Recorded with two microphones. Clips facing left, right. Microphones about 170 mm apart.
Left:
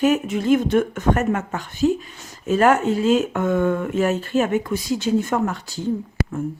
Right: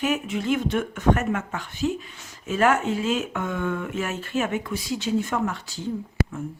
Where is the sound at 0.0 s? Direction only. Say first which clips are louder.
Left 6 dB; 40° left (ahead or behind).